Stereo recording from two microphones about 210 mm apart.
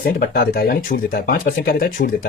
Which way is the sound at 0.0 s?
45° left (ahead or behind).